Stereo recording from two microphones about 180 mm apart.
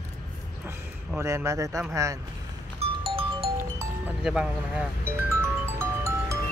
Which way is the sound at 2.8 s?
30° right (ahead or behind).